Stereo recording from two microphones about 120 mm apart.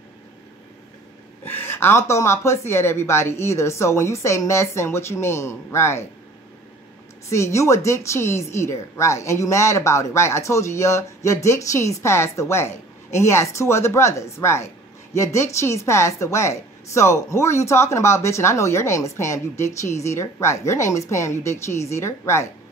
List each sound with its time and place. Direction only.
1.4 s speech: 15° left (ahead or behind)
7.2 s speech: 25° left (ahead or behind)